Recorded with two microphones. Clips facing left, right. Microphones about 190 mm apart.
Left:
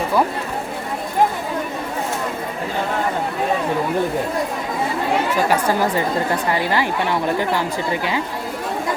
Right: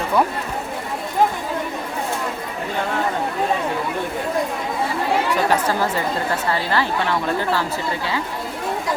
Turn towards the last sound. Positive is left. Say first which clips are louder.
# left 1 dB
turn(degrees=15)  # may be behind; listen again after turning